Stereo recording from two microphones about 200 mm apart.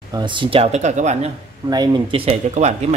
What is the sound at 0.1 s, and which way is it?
Speech, 25° right (ahead or behind).